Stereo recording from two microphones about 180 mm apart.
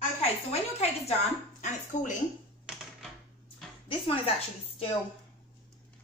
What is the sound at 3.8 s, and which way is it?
Speech, 30° left (ahead or behind).